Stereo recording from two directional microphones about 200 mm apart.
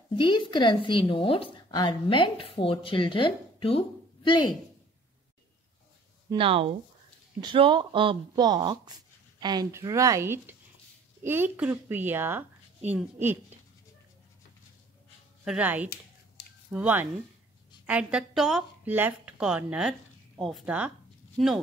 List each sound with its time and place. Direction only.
0.1 s speech: 25° left (ahead or behind)
6.3 s speech: 25° right (ahead or behind); by 13.6 s 10° right (ahead or behind)
15.4 s a woman's voice: 5° right (ahead or behind)